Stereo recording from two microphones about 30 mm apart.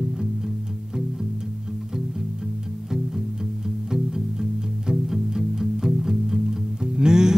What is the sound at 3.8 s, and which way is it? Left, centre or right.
Music, centre.